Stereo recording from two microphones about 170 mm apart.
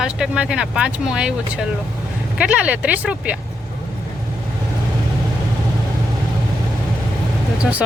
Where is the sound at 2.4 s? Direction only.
5° right (ahead or behind).